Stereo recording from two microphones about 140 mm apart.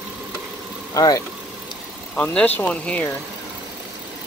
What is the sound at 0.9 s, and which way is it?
Speech, 25° left (ahead or behind).